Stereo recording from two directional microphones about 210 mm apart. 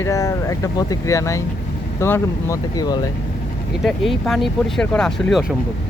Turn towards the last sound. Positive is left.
turn(degrees=0)  # may be behind; listen again after turning